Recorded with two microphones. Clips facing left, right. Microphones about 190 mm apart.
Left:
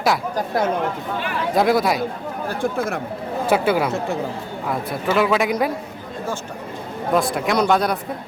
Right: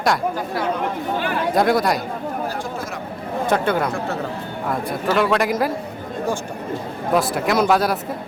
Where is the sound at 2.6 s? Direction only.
55° left (ahead or behind).